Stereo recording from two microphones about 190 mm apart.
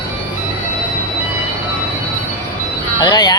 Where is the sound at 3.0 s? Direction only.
20° left (ahead or behind).